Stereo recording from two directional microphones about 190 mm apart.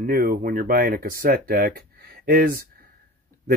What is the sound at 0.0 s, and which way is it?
Speech, 50° right (ahead or behind).